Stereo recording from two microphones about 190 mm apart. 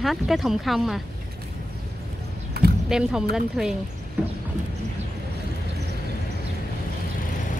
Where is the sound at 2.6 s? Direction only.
55° right (ahead or behind).